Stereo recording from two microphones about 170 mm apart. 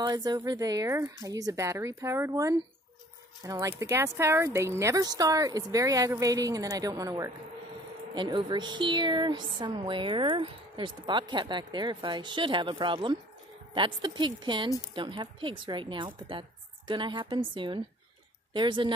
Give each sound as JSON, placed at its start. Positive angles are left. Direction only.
{"t": 0.0, "sound": "speech", "side_deg": -25}